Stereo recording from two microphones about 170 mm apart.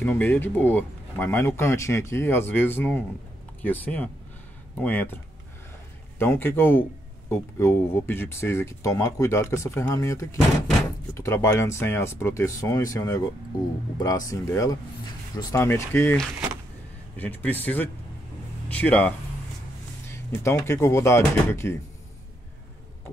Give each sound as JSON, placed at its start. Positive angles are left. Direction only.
{"t": 0.0, "sound": "speech", "side_deg": 10}
{"t": 20.1, "sound": "music", "side_deg": 15}
{"t": 20.6, "sound": "speech", "side_deg": 15}